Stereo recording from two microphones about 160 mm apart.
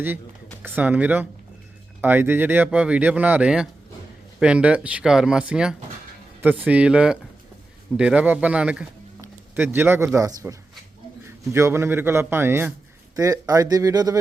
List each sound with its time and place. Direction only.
0.6 s speech: 10° right (ahead or behind)
9.2 s a sound: 15° right (ahead or behind)
10.2 s speech: 20° right (ahead or behind)